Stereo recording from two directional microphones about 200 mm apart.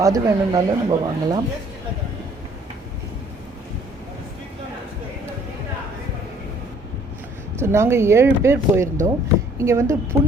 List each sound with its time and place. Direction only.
0.0 s speech: 20° right (ahead or behind)
7.6 s speech: 15° right (ahead or behind)